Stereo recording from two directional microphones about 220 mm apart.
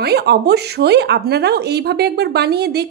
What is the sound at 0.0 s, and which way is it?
Speech, 45° right (ahead or behind).